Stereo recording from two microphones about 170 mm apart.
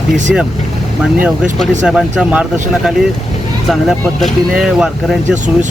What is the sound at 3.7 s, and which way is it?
Speech, centre (ahead or behind).